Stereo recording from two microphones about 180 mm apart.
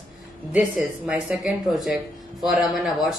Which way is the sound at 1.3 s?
Centre (ahead or behind).